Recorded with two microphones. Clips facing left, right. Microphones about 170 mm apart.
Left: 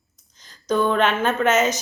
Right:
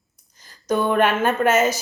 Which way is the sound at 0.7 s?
15° right (ahead or behind).